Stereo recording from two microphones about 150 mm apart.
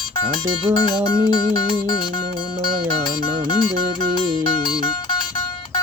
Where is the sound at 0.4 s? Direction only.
30° right (ahead or behind).